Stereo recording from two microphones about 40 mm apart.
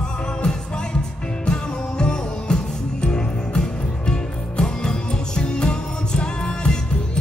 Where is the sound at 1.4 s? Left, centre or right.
Left.